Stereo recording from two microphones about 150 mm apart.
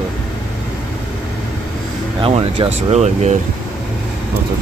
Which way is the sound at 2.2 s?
40° right (ahead or behind).